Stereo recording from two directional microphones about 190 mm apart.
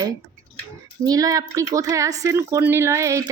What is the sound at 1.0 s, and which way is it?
A woman's voice, 20° right (ahead or behind).